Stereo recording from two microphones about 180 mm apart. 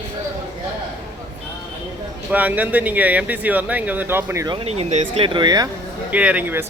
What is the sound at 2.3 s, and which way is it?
Speech, 10° right (ahead or behind).